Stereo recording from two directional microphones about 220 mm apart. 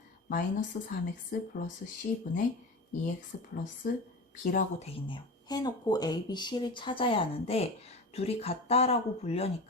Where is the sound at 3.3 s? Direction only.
40° left (ahead or behind).